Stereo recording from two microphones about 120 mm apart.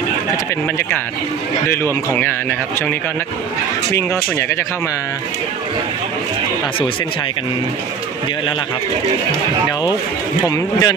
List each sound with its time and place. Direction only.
3.9 s speech: 20° left (ahead or behind)
10.4 s a man's voice: 30° left (ahead or behind)